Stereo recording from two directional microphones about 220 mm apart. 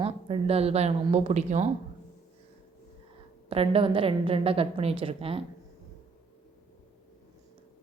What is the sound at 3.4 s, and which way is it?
A woman's voice, 25° right (ahead or behind).